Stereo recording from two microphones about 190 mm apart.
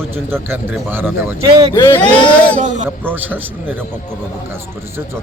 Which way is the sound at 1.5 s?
25° right (ahead or behind).